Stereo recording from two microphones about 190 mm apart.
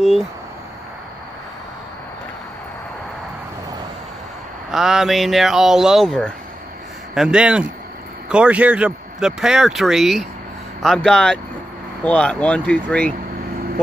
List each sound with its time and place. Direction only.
0.0 s speech: centre (ahead or behind)
4.6 s speech: centre (ahead or behind)